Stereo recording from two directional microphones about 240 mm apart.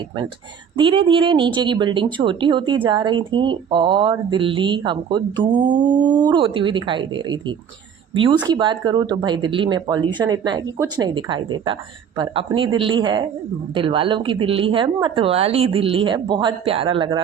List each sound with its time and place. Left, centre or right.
0.8 s speech: right